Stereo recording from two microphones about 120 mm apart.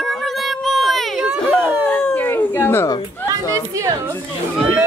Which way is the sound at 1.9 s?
10° left (ahead or behind).